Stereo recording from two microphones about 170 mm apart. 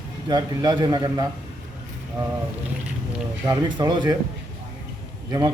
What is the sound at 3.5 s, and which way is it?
Speech, 25° right (ahead or behind).